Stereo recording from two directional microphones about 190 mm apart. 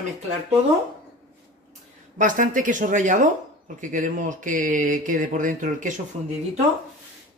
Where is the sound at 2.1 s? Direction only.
45° right (ahead or behind).